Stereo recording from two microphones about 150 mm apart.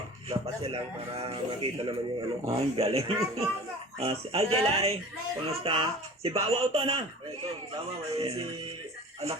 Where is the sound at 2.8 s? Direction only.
40° right (ahead or behind).